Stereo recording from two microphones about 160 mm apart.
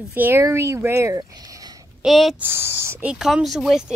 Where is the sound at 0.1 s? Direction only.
15° right (ahead or behind).